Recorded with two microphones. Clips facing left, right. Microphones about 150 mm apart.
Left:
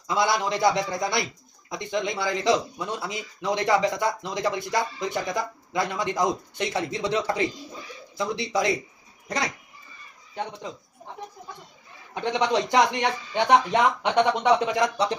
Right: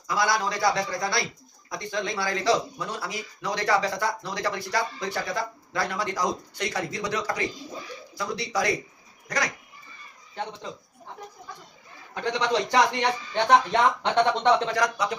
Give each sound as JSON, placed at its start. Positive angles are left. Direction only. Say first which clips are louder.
{"t": 0.1, "sound": "a man's voice", "louder": "left 2 dB", "side_deg": 25}
{"t": 12.1, "sound": "a man's voice", "louder": "left 2 dB", "side_deg": 20}
{"t": 14.8, "sound": "a man's voice", "louder": "left 2 dB", "side_deg": 30}